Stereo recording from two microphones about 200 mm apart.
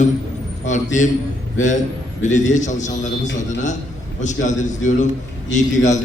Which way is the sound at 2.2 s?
35° left (ahead or behind).